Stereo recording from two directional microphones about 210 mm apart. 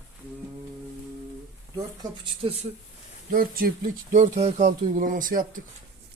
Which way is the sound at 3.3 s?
45° right (ahead or behind).